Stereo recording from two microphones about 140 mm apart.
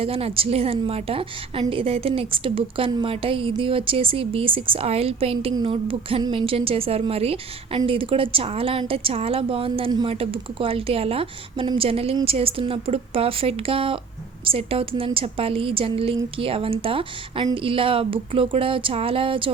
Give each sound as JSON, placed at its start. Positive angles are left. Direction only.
{"t": 0.0, "sound": "a woman's voice", "side_deg": -45}